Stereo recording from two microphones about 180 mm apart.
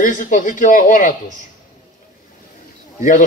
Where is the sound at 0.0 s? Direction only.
45° left (ahead or behind).